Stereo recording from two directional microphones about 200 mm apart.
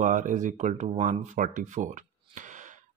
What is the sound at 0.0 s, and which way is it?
Speech, 40° right (ahead or behind).